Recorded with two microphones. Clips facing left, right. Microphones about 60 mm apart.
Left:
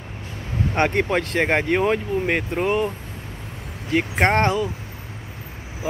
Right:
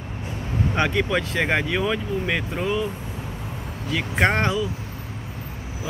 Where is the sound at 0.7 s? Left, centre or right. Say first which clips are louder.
Left 3 dB; left.